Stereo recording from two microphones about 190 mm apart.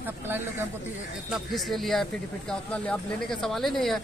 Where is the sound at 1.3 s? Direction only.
Centre (ahead or behind).